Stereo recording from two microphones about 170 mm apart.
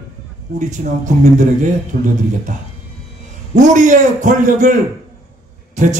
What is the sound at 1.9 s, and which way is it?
Speech, 65° right (ahead or behind).